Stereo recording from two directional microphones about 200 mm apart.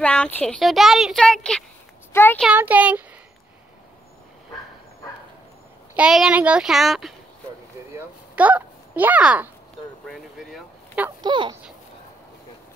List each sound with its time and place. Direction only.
0.0 s speech: 5° left (ahead or behind)
2.4 s speech: 10° right (ahead or behind)
5.9 s speech: 5° right (ahead or behind)
8.4 s speech: 5° right (ahead or behind)
11.1 s speech: 20° right (ahead or behind)